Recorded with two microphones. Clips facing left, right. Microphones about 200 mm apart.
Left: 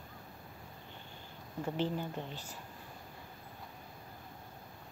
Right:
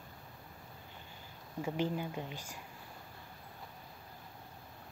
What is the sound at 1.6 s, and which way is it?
Speech, 10° right (ahead or behind).